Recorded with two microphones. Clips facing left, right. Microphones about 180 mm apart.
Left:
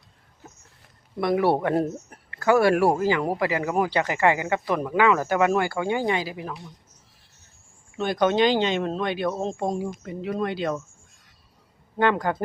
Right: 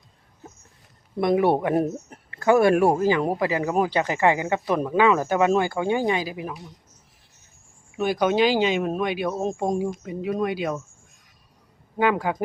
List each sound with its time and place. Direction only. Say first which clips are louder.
1.2 s speech: right 2 dB; 20° right (ahead or behind)
7.9 s speech: even; 10° right (ahead or behind)
11.9 s speech: even; 10° right (ahead or behind)